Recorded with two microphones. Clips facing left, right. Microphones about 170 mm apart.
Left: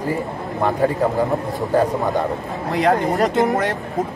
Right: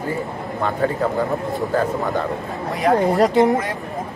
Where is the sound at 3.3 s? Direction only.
Centre (ahead or behind).